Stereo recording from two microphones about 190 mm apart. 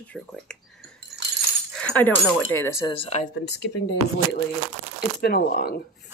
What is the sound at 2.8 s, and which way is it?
Speech, 30° left (ahead or behind).